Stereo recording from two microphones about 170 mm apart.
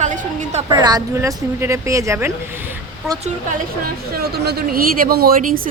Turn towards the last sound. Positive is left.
turn(degrees=-55)  # may be behind; listen again after turning